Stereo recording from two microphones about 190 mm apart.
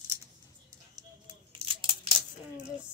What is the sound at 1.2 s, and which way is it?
Coin, 25° right (ahead or behind).